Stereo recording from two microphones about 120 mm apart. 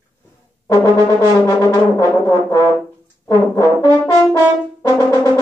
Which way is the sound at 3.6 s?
25° left (ahead or behind).